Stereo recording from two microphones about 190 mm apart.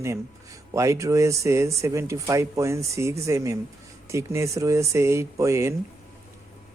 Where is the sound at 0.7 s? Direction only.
15° right (ahead or behind).